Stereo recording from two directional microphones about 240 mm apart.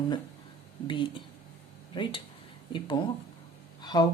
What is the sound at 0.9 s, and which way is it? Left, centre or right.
Speech, centre.